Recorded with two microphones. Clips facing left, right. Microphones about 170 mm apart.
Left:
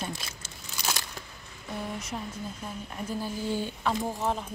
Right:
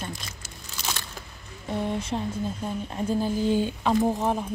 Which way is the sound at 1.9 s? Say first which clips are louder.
Right 7 dB; 30° right (ahead or behind).